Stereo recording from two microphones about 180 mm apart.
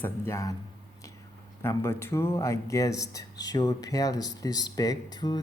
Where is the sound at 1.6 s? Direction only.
15° left (ahead or behind).